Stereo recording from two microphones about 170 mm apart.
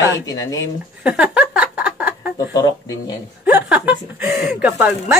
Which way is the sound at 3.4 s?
10° right (ahead or behind).